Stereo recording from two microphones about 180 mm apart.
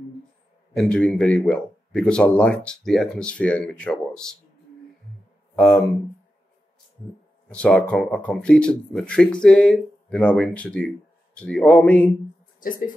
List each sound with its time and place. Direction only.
0.7 s speech: 5° left (ahead or behind)
5.6 s speech: 5° left (ahead or behind)
7.4 s a man's voice: 5° left (ahead or behind)
12.5 s speech: 50° left (ahead or behind)